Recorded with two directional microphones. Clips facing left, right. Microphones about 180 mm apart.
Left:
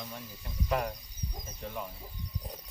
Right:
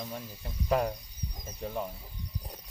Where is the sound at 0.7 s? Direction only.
35° right (ahead or behind).